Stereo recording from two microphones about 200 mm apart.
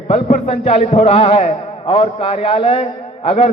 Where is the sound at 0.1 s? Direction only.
35° left (ahead or behind).